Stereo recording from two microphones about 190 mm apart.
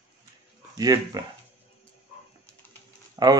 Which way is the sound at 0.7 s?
20° right (ahead or behind).